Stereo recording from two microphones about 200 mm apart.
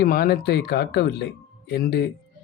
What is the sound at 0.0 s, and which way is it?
Speech, 50° left (ahead or behind).